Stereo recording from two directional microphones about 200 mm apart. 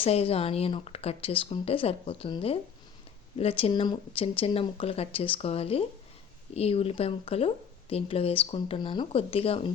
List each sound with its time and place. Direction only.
0.0 s speech: 30° left (ahead or behind)